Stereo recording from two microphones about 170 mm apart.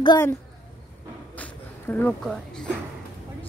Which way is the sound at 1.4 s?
10° left (ahead or behind).